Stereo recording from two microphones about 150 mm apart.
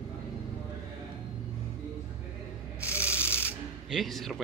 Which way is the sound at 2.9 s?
15° left (ahead or behind).